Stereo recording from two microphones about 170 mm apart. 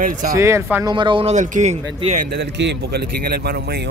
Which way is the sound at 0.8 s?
30° right (ahead or behind).